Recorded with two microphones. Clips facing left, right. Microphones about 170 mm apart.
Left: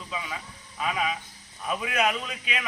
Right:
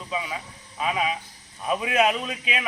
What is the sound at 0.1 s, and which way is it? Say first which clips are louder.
A man's voice: right 5 dB; 15° right (ahead or behind).